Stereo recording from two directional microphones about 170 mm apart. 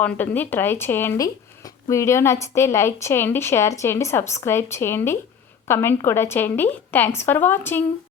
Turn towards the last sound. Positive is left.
turn(degrees=15)  # may be behind; listen again after turning